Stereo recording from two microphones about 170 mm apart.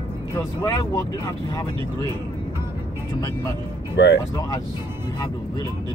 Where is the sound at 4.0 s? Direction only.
90° left.